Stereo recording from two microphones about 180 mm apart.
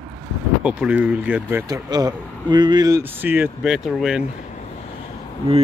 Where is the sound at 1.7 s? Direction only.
20° right (ahead or behind); by 4.2 s centre (ahead or behind).